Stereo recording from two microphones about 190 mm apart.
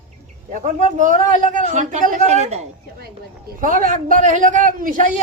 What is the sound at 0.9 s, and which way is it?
A man's voice, 45° right (ahead or behind).